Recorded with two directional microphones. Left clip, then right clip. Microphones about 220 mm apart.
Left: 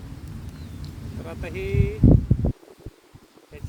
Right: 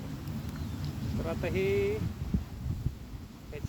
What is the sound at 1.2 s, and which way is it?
Speech, 15° left (ahead or behind).